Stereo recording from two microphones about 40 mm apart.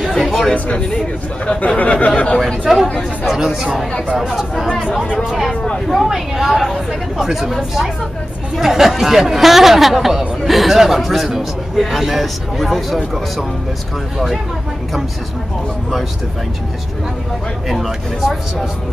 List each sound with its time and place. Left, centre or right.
0.2 s chatter: centre
0.7 s speech: left
2.7 s speech: centre
5.9 s speech: centre
17.6 s speech: centre